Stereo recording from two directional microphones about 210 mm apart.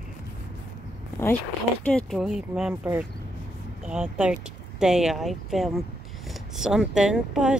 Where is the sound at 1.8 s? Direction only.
5° left (ahead or behind).